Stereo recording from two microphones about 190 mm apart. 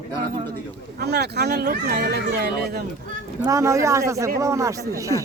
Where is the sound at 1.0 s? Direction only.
60° right (ahead or behind).